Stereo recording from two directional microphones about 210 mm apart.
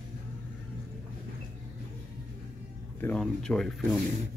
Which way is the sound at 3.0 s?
5° left (ahead or behind).